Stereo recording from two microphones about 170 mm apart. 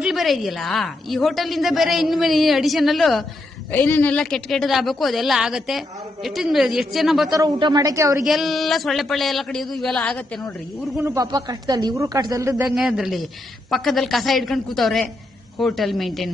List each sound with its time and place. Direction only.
0.0 s a woman's voice: centre (ahead or behind)
3.7 s a woman's voice: 10° left (ahead or behind)
7.3 s speech: 25° right (ahead or behind)
8.2 s a woman's voice: centre (ahead or behind)
11.1 s speech: 20° right (ahead or behind)
12.6 s a woman's voice: centre (ahead or behind)